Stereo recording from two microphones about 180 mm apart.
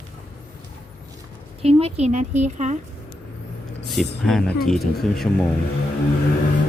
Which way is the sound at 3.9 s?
Centre (ahead or behind).